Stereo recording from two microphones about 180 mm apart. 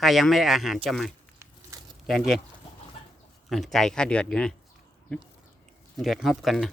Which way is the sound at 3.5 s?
Centre (ahead or behind).